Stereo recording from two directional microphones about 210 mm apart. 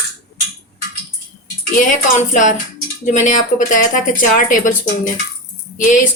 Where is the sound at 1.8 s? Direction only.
35° left (ahead or behind).